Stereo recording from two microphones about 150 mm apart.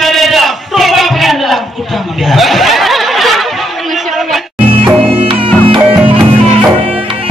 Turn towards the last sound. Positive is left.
turn(degrees=-35)  # may be behind; listen again after turning